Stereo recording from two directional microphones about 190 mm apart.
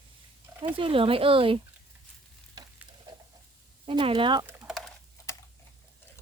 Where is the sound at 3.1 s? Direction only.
25° right (ahead or behind).